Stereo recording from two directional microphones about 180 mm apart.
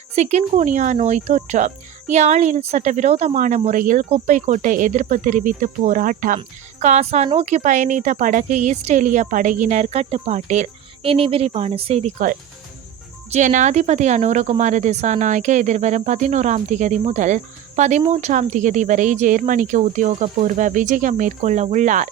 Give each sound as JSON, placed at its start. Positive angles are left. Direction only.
{"t": 0.2, "sound": "speech", "side_deg": -40}
{"t": 13.3, "sound": "speech", "side_deg": -45}